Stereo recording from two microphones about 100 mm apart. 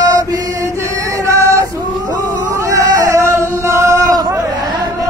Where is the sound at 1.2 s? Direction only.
30° right (ahead or behind).